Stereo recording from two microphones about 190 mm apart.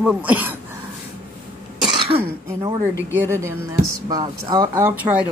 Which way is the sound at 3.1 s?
15° right (ahead or behind).